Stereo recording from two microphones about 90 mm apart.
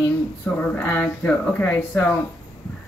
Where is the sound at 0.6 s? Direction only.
20° left (ahead or behind).